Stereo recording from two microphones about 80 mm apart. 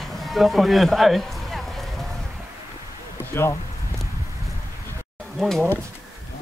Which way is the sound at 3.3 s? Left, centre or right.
Left.